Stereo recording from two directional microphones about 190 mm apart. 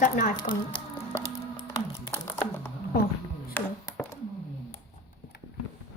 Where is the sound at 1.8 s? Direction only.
10° left (ahead or behind).